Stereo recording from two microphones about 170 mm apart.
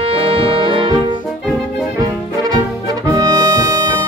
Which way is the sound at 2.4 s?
20° right (ahead or behind).